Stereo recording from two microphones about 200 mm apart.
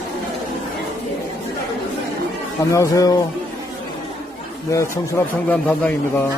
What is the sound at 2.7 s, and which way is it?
Speech, 15° left (ahead or behind).